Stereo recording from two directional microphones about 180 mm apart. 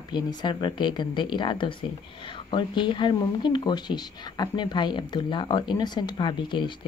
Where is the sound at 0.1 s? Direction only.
25° left (ahead or behind).